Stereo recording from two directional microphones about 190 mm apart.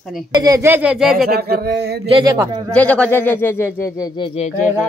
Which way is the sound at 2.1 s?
25° right (ahead or behind).